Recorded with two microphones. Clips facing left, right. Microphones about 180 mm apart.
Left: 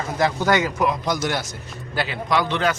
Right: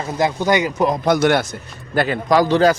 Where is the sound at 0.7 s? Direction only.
35° right (ahead or behind).